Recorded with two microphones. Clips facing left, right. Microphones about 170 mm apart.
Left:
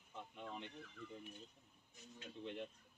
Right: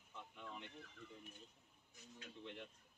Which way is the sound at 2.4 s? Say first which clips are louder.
Left 6 dB; 20° left (ahead or behind).